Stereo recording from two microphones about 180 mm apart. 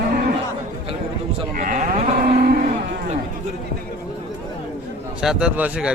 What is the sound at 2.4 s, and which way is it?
Cattle, 55° right (ahead or behind).